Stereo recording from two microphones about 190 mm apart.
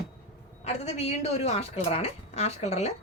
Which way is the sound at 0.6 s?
35° left (ahead or behind).